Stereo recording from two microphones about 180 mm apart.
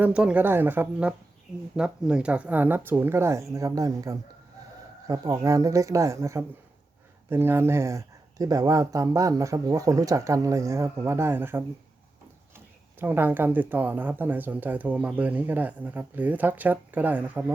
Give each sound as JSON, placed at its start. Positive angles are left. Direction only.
{"t": 0.0, "sound": "speech", "side_deg": -5}